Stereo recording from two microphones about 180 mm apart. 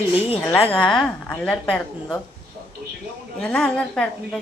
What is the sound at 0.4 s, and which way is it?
A woman's voice, 10° left (ahead or behind).